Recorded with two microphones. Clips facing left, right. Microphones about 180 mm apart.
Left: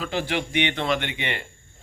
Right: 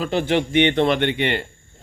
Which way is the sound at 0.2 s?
50° right (ahead or behind).